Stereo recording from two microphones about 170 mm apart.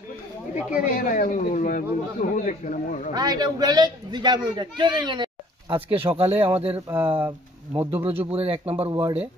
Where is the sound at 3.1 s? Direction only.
25° right (ahead or behind).